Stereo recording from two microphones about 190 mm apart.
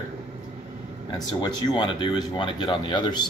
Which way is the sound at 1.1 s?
20° left (ahead or behind).